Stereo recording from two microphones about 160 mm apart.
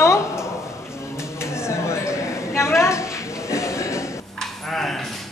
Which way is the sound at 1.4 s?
15° left (ahead or behind).